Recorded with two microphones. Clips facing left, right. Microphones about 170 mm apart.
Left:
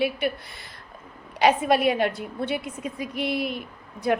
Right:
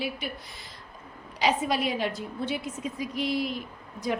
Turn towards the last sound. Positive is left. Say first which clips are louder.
# left 6 dB
turn(degrees=60)  # may be behind; listen again after turning